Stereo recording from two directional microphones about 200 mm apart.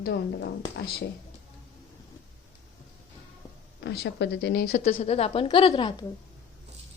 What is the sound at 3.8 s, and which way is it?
A woman's voice, 55° left (ahead or behind).